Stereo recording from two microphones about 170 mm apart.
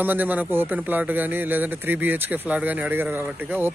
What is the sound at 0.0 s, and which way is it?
Speech, 10° right (ahead or behind).